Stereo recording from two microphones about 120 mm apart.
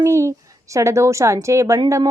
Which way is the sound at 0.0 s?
25° right (ahead or behind).